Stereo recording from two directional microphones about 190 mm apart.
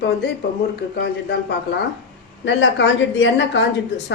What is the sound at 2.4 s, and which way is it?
Speech, 70° left (ahead or behind).